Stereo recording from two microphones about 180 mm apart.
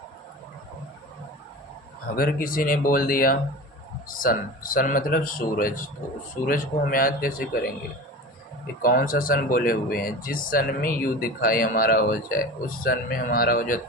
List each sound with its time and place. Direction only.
2.1 s speech: 55° left (ahead or behind)